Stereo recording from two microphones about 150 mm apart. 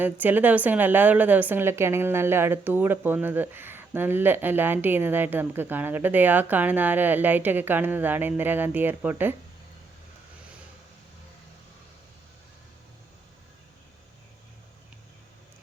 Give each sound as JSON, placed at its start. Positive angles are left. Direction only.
{"t": 0.0, "sound": "a woman's voice", "side_deg": -10}